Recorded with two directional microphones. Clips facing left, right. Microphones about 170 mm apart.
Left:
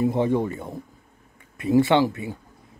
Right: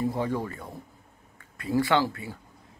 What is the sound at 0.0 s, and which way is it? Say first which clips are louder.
Speech: left 7 dB; 25° left (ahead or behind).